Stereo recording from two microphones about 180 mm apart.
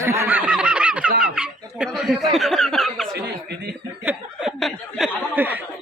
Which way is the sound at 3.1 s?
70° right (ahead or behind).